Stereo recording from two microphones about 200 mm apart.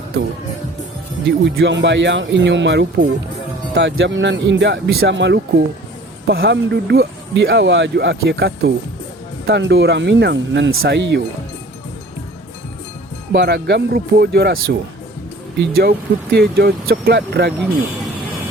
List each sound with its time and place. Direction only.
1.3 s speech: 55° right (ahead or behind); by 10.8 s 75° right (ahead or behind)
10.8 s speech: 60° right (ahead or behind)
13.3 s speech: 55° right (ahead or behind)